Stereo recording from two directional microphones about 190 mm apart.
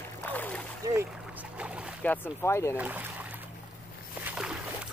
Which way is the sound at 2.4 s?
15° left (ahead or behind).